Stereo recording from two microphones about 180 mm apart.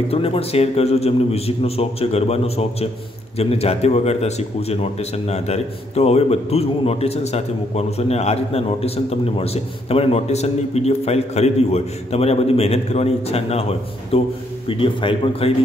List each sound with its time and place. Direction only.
0.1 s a man's voice: 30° left (ahead or behind)